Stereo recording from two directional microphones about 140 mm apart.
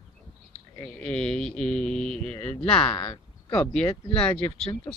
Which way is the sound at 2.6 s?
5° left (ahead or behind).